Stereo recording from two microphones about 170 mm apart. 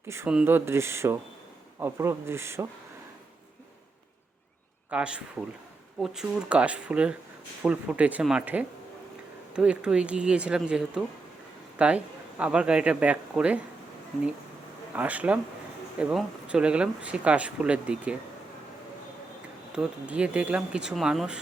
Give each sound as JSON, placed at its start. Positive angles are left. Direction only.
{"t": 0.1, "sound": "speech", "side_deg": -10}
{"t": 4.9, "sound": "speech", "side_deg": -5}
{"t": 14.9, "sound": "speech", "side_deg": -10}
{"t": 19.7, "sound": "speech", "side_deg": -5}